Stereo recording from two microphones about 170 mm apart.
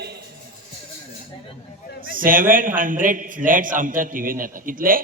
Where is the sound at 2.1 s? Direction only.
55° right (ahead or behind).